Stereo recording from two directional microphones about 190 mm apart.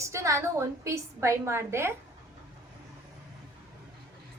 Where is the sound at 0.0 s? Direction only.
15° right (ahead or behind).